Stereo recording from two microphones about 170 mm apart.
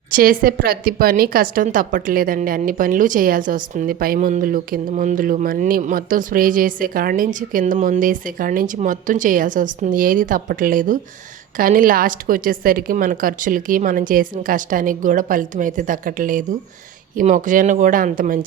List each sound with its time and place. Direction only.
0.1 s a woman's voice: 55° right (ahead or behind)